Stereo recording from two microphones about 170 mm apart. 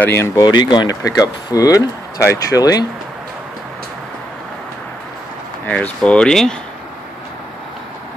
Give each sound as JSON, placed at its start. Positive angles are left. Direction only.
{"t": 0.0, "sound": "speech", "side_deg": 15}
{"t": 5.7, "sound": "speech", "side_deg": 5}